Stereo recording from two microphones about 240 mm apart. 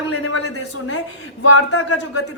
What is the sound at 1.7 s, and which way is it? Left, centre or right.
Speech, left.